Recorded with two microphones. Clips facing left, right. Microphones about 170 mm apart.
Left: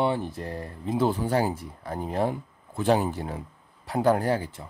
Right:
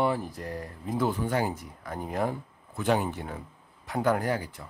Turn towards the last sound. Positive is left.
turn(degrees=30)  # may be behind; listen again after turning